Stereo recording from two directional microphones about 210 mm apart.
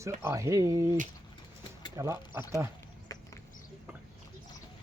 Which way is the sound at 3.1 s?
15° left (ahead or behind).